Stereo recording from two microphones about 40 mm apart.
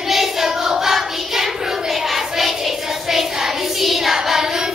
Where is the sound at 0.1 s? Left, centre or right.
Centre.